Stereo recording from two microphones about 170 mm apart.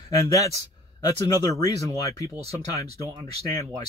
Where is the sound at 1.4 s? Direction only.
20° left (ahead or behind).